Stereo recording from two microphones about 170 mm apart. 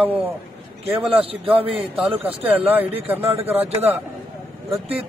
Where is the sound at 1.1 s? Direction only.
35° right (ahead or behind).